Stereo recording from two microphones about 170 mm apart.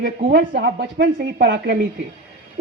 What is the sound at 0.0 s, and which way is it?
A woman's voice, 60° right (ahead or behind).